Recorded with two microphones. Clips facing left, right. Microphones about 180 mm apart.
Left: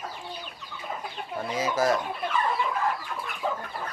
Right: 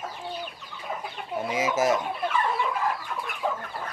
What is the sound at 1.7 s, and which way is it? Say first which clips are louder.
Speech: even; 20° right (ahead or behind).